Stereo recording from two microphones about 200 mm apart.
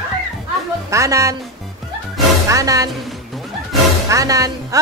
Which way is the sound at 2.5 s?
15° right (ahead or behind).